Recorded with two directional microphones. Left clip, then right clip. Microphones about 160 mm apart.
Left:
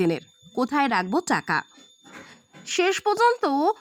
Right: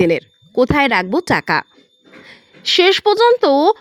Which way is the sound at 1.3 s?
20° right (ahead or behind).